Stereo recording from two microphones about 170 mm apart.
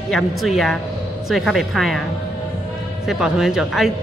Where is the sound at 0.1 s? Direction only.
Centre (ahead or behind).